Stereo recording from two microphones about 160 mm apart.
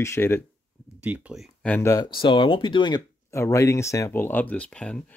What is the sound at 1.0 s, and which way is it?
Speech, 10° right (ahead or behind).